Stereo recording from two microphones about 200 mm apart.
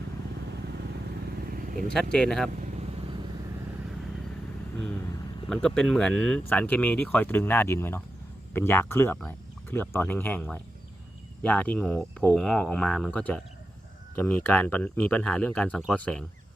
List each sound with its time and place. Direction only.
1.5 s vehicle: 45° right (ahead or behind)
2.1 s speech: 5° left (ahead or behind)
5.5 s speech: 5° left (ahead or behind)